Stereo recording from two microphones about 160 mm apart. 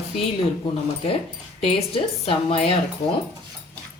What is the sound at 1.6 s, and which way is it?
Speech, 35° left (ahead or behind).